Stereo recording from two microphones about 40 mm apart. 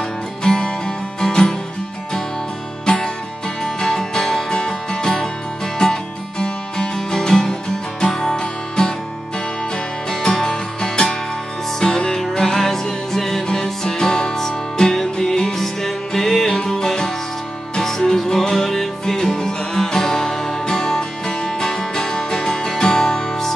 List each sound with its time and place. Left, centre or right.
0.4 s music: centre
2.8 s music: centre
10.2 s music: centre